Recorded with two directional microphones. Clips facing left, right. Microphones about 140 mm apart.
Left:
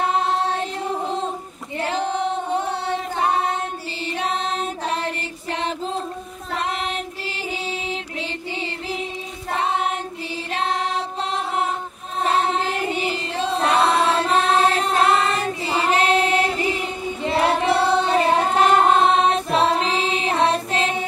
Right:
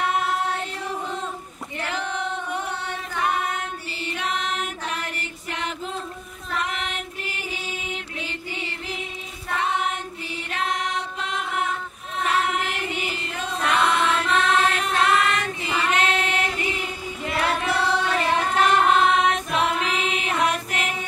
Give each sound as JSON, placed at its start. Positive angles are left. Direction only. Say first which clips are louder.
{"t": 0.0, "sound": "music", "louder": "left 3 dB", "side_deg": 30}
{"t": 1.8, "sound": "singing", "louder": "left 6 dB", "side_deg": 30}
{"t": 6.5, "sound": "child singing", "louder": "left 3 dB", "side_deg": 30}
{"t": 7.9, "sound": "music", "louder": "left 4 dB", "side_deg": 30}
{"t": 9.5, "sound": "singing", "louder": "left 3 dB", "side_deg": 30}
{"t": 10.5, "sound": "music", "louder": "left 3 dB", "side_deg": 30}